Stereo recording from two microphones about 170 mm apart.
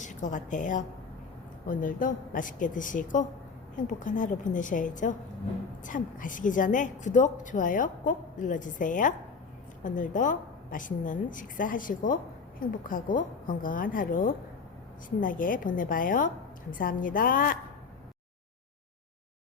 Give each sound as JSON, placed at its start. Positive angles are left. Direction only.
{"t": 0.0, "sound": "a woman's voice", "side_deg": 45}